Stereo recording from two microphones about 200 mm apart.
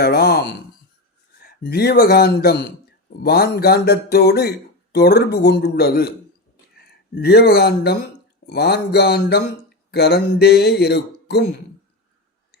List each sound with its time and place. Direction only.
0.0 s speech: 50° left (ahead or behind)